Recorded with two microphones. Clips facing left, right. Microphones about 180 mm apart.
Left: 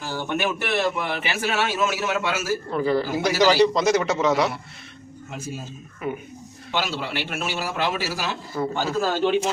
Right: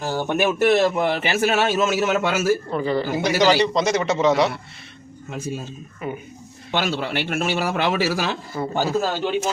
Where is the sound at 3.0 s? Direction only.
55° right (ahead or behind).